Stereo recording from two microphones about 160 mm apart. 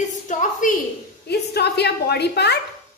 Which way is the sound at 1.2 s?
90° left.